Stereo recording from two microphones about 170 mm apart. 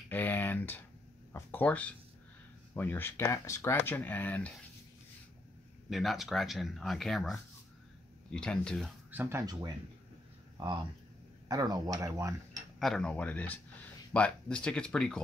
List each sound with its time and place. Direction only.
0.1 s speech: 10° left (ahead or behind)
5.9 s speech: centre (ahead or behind)
9.1 s speech: 15° right (ahead or behind)
12.7 s speech: centre (ahead or behind)